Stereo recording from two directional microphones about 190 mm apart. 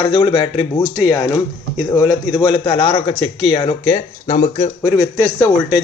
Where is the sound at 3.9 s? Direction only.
40° left (ahead or behind).